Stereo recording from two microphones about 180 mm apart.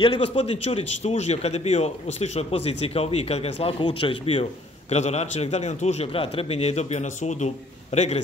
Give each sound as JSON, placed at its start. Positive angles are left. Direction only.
{"t": 0.0, "sound": "a man's voice", "side_deg": 35}